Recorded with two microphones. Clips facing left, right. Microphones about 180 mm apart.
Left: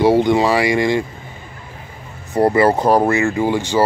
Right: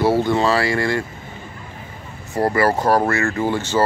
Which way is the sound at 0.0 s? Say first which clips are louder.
Left 4 dB; 15° left (ahead or behind).